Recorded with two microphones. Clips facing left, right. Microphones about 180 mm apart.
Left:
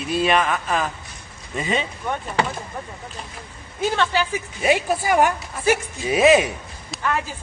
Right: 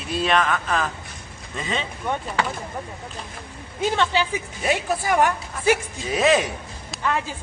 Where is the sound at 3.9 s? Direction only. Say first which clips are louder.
Even; 20° right (ahead or behind).